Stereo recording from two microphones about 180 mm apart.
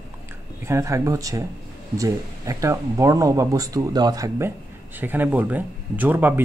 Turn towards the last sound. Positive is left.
turn(degrees=-10)  # may be behind; listen again after turning